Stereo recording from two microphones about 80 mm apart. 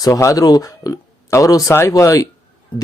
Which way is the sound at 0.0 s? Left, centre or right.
Left.